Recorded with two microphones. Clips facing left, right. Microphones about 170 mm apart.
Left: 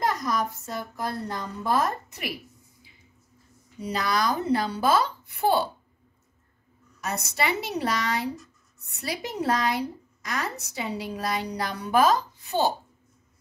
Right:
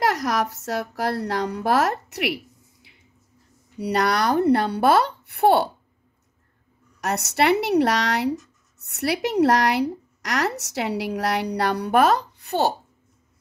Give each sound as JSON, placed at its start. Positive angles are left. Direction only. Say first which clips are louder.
{"t": 0.0, "sound": "a woman's voice", "louder": "right 4 dB", "side_deg": -75}
{"t": 7.0, "sound": "speech", "louder": "right 7 dB", "side_deg": -70}